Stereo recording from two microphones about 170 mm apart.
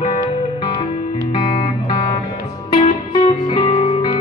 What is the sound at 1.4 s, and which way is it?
Music, 30° left (ahead or behind).